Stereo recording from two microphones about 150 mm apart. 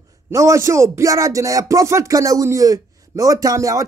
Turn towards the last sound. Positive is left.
turn(degrees=-20)  # may be behind; listen again after turning